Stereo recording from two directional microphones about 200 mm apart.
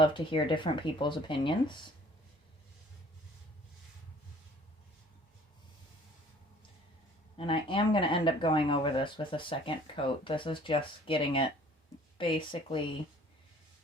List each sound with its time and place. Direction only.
0.0 s speech: 25° left (ahead or behind)
7.3 s speech: 25° left (ahead or behind)